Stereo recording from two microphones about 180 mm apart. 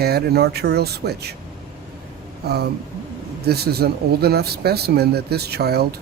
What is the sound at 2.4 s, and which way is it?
Speech, 60° right (ahead or behind).